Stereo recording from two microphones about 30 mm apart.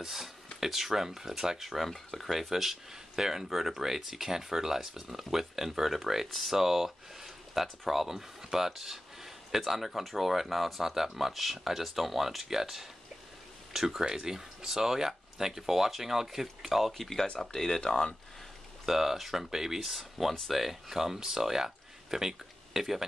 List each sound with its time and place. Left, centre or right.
0.0 s speech: centre
1.6 s speech: centre
16.9 s speech: centre
17.5 s speech: left
18.9 s speech: centre
19.9 s speech: centre